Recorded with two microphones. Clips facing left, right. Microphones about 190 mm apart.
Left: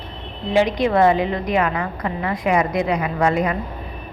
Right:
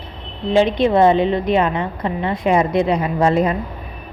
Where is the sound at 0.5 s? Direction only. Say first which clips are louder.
Right 3 dB; 25° right (ahead or behind).